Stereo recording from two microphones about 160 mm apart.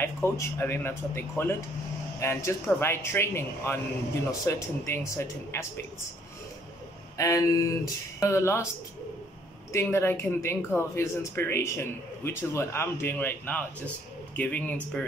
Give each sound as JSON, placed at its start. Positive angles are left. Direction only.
{"t": 0.0, "sound": "speech", "side_deg": 15}
{"t": 7.2, "sound": "speech", "side_deg": 20}
{"t": 9.7, "sound": "speech", "side_deg": 15}